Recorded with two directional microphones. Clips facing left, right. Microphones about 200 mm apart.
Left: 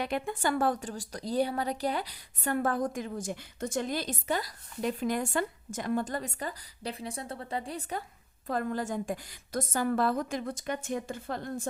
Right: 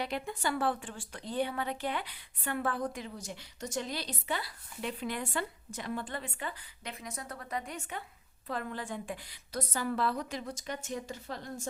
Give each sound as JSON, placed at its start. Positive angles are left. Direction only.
{"t": 0.0, "sound": "a woman's voice", "side_deg": 50}